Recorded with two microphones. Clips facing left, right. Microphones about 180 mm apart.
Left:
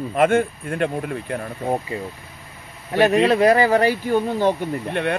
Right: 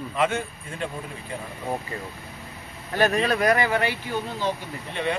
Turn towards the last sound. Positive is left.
turn(degrees=60)  # may be behind; listen again after turning